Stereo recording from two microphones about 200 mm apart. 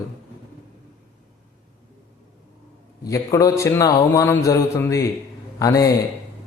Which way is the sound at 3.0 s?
15° left (ahead or behind).